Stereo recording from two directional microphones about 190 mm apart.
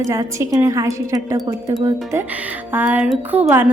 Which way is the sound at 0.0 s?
15° right (ahead or behind).